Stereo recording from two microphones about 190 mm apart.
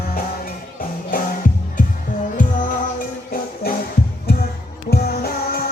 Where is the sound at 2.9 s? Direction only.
50° left (ahead or behind).